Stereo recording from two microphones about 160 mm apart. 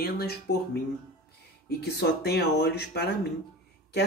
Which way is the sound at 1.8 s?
90° left.